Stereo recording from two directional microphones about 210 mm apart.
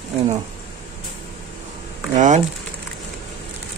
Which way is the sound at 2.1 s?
35° right (ahead or behind).